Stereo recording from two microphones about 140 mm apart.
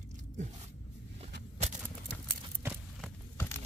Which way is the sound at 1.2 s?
50° right (ahead or behind).